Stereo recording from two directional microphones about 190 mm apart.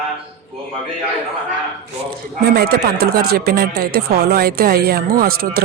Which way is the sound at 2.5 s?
55° right (ahead or behind).